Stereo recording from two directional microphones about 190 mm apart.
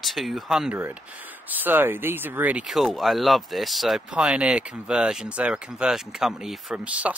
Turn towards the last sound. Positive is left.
turn(degrees=-5)  # may be behind; listen again after turning